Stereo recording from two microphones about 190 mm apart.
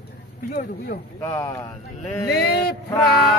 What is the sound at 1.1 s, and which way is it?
Speech, 20° left (ahead or behind).